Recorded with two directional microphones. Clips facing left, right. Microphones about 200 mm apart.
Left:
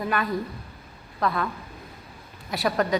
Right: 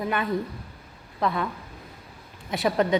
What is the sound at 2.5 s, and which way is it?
Speech, 20° right (ahead or behind).